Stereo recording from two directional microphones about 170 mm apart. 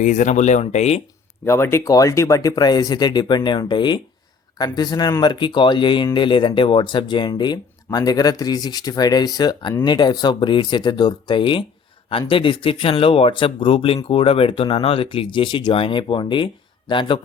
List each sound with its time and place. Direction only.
0.0 s speech: 45° left (ahead or behind)
1.5 s speech: 15° left (ahead or behind)